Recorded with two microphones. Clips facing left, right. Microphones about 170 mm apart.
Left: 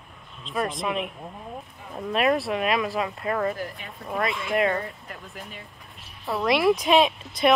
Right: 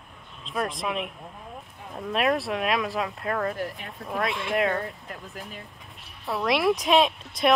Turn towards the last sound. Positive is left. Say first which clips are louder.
# left 2 dB
turn(degrees=0)  # may be behind; listen again after turning